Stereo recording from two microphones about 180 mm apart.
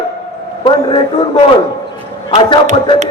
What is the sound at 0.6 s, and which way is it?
Speech, 25° left (ahead or behind).